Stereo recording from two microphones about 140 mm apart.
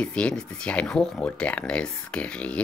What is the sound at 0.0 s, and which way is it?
Speech, 10° left (ahead or behind).